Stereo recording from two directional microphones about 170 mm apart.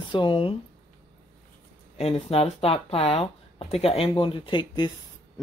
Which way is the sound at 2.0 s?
35° left (ahead or behind).